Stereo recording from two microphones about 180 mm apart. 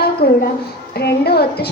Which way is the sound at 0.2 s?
55° left (ahead or behind).